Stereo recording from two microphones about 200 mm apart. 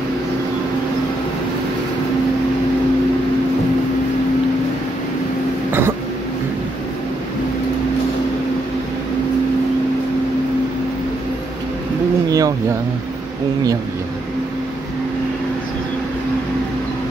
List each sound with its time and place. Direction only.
5.7 s throat clearing: 10° right (ahead or behind)
12.3 s vehicle: 15° right (ahead or behind)